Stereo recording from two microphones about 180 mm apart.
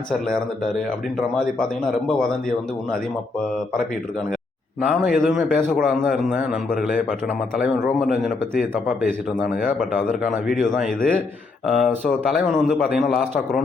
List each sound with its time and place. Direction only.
4.8 s a man's voice: centre (ahead or behind)
9.6 s speech: 50° left (ahead or behind)
10.5 s a man's voice: centre (ahead or behind)